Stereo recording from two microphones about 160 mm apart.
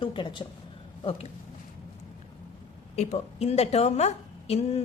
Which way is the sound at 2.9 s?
40° left (ahead or behind).